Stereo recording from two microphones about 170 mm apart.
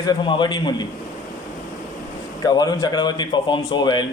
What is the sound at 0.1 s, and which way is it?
Speech, 25° left (ahead or behind).